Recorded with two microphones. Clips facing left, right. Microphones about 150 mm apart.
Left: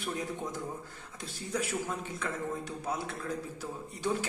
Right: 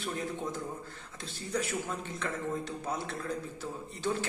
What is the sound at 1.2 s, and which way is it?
A man's voice, 10° left (ahead or behind).